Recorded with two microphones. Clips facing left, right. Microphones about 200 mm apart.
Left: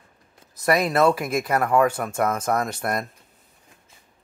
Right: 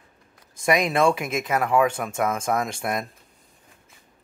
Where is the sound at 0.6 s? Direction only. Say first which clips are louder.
Left 1 dB; 15° right (ahead or behind).